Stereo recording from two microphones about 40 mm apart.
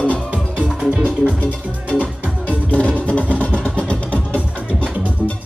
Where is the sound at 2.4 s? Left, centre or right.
Left.